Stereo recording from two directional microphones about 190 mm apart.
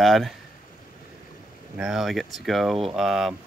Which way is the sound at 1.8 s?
5° right (ahead or behind).